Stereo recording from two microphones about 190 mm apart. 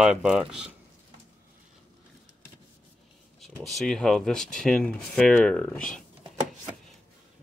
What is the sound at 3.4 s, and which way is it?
Speech, centre (ahead or behind).